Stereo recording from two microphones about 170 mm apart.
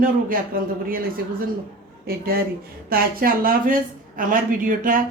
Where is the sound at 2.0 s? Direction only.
60° right (ahead or behind).